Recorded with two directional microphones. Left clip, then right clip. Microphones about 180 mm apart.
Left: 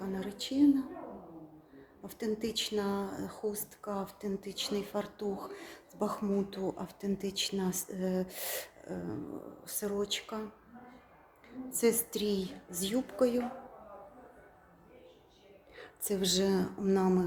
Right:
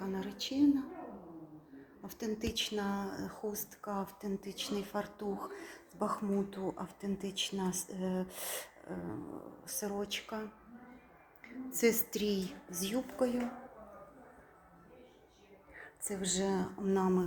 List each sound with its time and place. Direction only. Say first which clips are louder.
0.0 s a sound: left 1 dB; 20° left (ahead or behind)
2.0 s speech: left 4 dB; 20° left (ahead or behind)
11.4 s a woman's voice: left 1 dB; centre (ahead or behind)
12.9 s a woman's voice: left 4 dB; 30° left (ahead or behind)
15.7 s speech: left 6 dB; 50° left (ahead or behind)